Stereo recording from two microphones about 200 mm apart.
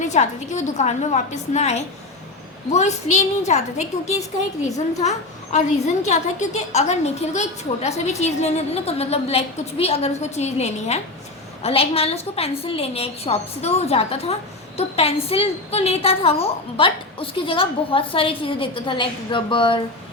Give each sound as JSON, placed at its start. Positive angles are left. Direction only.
{"t": 0.0, "sound": "a woman's voice", "side_deg": 35}